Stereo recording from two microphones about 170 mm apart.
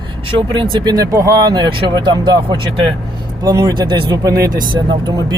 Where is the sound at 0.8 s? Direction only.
20° right (ahead or behind).